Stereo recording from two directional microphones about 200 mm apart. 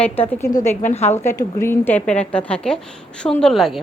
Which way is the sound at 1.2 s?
15° left (ahead or behind).